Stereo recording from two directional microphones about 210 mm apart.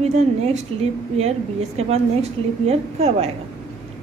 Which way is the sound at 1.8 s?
30° right (ahead or behind).